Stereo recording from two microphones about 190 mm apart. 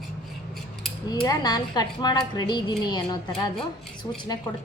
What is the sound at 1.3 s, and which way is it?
A woman's voice, 20° left (ahead or behind).